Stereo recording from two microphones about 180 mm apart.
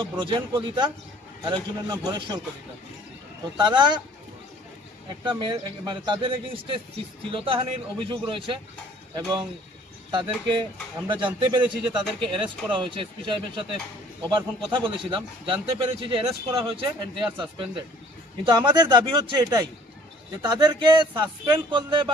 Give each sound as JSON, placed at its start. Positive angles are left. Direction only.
{"t": 0.0, "sound": "a man's voice", "side_deg": -25}
{"t": 3.5, "sound": "a man's voice", "side_deg": -25}
{"t": 5.2, "sound": "a man's voice", "side_deg": -25}